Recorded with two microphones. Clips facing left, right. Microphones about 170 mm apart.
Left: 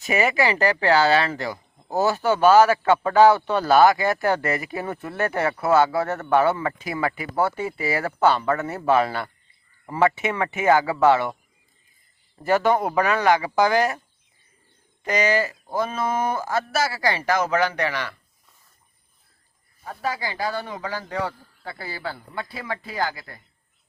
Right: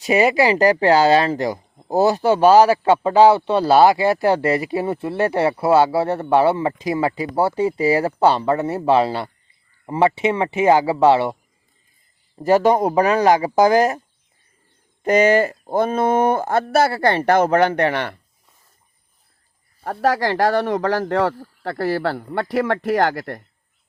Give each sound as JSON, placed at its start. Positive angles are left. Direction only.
{"t": 0.0, "sound": "a man's voice", "side_deg": -35}
{"t": 12.4, "sound": "a man's voice", "side_deg": -35}
{"t": 15.0, "sound": "a woman's voice", "side_deg": -50}
{"t": 19.8, "sound": "speech", "side_deg": -75}